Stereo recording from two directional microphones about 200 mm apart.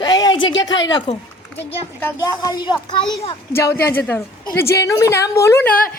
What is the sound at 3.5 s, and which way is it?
A woman's voice, 10° left (ahead or behind).